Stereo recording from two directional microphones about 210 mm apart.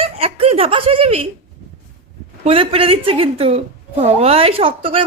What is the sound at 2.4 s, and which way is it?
A woman's voice, 25° right (ahead or behind).